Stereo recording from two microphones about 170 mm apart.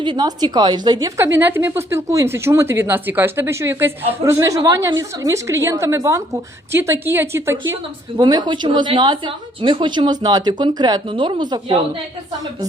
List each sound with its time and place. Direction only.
0.0 s a woman's voice: 25° right (ahead or behind)
8.2 s speech: 25° right (ahead or behind)